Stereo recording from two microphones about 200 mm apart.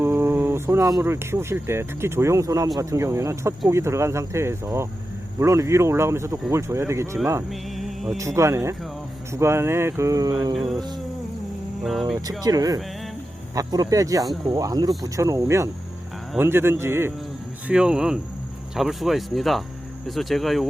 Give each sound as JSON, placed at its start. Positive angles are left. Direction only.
{"t": 0.0, "sound": "speech", "side_deg": -10}
{"t": 7.5, "sound": "music", "side_deg": 0}
{"t": 8.2, "sound": "speech", "side_deg": -15}
{"t": 10.5, "sound": "speech", "side_deg": 0}
{"t": 12.4, "sound": "speech", "side_deg": -20}